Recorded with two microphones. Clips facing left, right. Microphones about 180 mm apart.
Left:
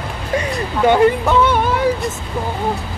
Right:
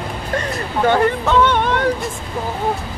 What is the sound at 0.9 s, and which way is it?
Speech, 10° left (ahead or behind).